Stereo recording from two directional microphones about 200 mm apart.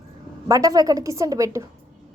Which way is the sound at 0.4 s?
20° right (ahead or behind).